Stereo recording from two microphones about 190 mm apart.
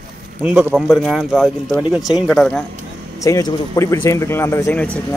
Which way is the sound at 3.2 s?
15° left (ahead or behind).